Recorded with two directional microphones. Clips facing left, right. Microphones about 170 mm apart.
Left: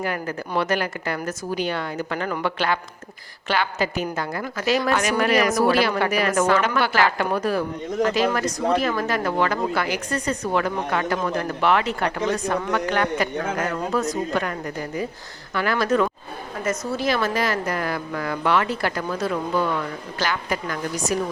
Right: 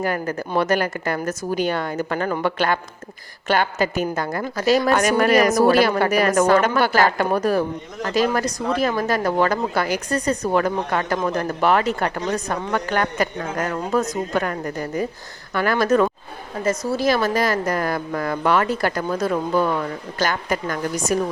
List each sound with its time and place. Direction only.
0.0 s a woman's voice: 40° right (ahead or behind)
15.5 s a woman's voice: 45° right (ahead or behind)
20.1 s a woman's voice: 45° right (ahead or behind)